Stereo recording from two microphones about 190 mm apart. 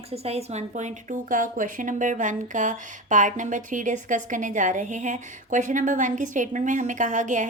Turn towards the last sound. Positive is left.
turn(degrees=-40)  # may be behind; listen again after turning